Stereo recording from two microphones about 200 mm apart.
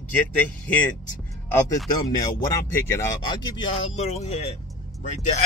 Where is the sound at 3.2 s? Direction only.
25° left (ahead or behind).